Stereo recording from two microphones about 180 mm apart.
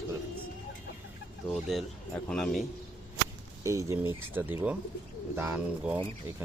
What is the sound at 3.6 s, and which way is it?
Speech, 15° right (ahead or behind).